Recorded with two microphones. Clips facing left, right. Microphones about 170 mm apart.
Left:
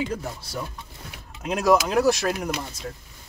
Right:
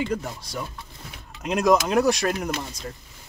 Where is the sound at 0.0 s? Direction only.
5° left (ahead or behind).